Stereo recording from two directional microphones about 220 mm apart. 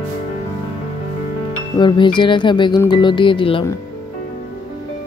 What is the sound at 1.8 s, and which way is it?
Speech, 20° left (ahead or behind).